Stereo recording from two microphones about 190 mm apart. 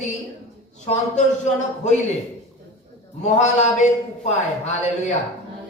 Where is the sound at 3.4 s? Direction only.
35° left (ahead or behind).